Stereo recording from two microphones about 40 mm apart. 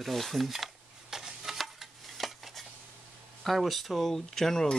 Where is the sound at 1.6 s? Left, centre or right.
Centre.